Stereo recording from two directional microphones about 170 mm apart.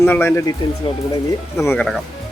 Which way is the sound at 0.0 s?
15° left (ahead or behind).